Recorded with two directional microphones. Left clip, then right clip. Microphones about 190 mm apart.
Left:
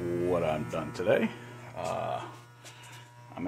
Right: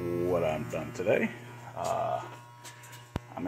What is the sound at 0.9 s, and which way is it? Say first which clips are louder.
Speech: left 1 dB; 10° left (ahead or behind).